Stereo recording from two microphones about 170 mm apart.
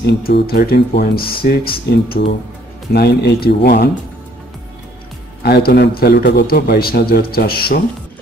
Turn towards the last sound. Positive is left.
turn(degrees=60)  # may be behind; listen again after turning